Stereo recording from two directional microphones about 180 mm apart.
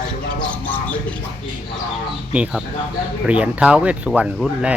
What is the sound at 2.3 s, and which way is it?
Speech, 5° right (ahead or behind).